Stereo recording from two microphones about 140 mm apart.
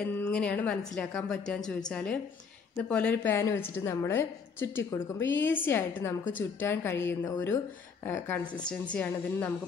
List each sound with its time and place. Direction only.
0.2 s a woman's voice: 10° left (ahead or behind)